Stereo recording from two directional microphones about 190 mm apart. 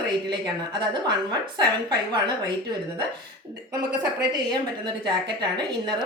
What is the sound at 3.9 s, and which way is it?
A woman's voice, 20° right (ahead or behind).